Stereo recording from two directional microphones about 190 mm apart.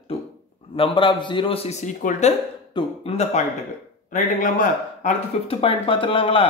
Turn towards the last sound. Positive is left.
turn(degrees=30)  # may be behind; listen again after turning